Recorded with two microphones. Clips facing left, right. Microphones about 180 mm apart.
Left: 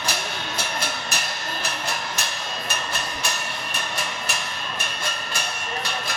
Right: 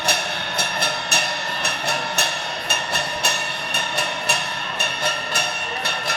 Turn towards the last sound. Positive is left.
turn(degrees=-65)  # may be behind; listen again after turning